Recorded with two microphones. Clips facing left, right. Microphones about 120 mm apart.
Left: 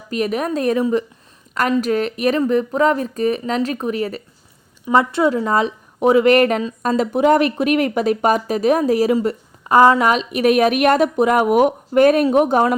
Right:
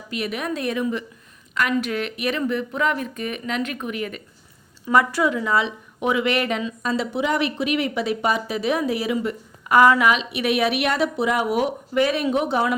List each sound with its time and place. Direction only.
0.1 s a woman's voice: 40° left (ahead or behind)